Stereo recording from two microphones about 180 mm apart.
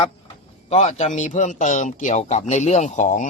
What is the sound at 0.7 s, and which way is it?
A man's voice, 40° left (ahead or behind).